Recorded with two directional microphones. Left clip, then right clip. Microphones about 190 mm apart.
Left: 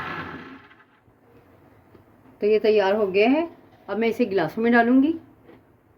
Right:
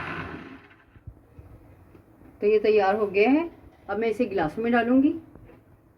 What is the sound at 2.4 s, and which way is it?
A woman's voice, 55° left (ahead or behind).